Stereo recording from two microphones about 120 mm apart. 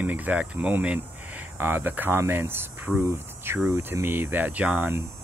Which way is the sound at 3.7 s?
20° right (ahead or behind).